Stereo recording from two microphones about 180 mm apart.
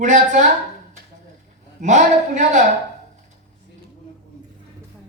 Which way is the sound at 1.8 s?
45° right (ahead or behind).